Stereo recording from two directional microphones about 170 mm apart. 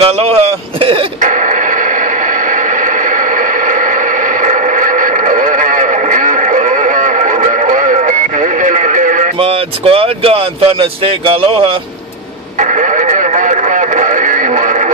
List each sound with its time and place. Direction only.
0.0 s speech: 35° right (ahead or behind)
1.2 s radio: 50° right (ahead or behind)
9.4 s speech: 35° right (ahead or behind)
12.5 s radio: 45° right (ahead or behind)